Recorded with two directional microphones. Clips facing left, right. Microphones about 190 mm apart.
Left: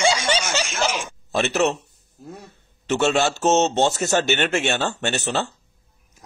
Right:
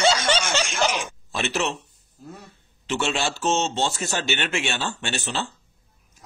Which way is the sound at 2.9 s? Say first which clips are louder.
Left 6 dB; 45° left (ahead or behind).